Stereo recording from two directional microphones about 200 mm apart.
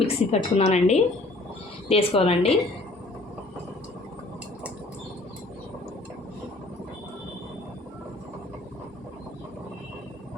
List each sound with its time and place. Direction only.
0.0 s a woman's voice: 30° left (ahead or behind)